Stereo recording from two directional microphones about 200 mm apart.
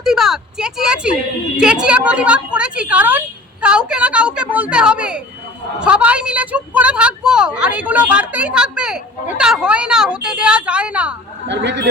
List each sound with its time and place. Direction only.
0.0 s a woman's voice: centre (ahead or behind)
11.4 s speech: 60° right (ahead or behind)